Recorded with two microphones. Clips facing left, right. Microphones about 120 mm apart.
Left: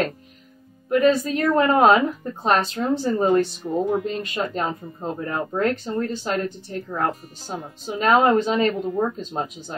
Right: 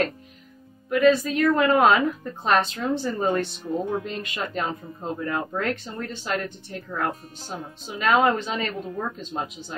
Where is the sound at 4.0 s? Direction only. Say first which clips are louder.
Left 5 dB; 35° left (ahead or behind).